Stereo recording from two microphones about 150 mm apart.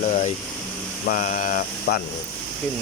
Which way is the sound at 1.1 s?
60° left (ahead or behind).